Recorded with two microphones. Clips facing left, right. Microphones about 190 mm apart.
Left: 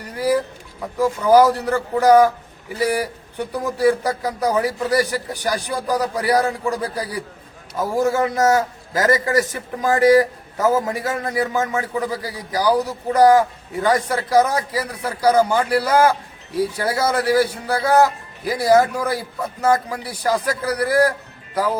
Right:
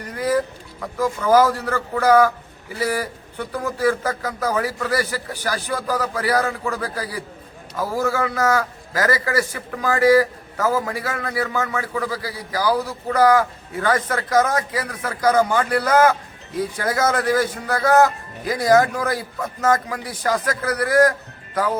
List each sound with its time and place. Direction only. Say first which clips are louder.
0.3 s a man's voice: left 1 dB; 15° left (ahead or behind)